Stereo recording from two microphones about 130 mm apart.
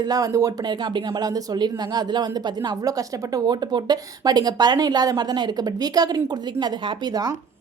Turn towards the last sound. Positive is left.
turn(degrees=-30)  # may be behind; listen again after turning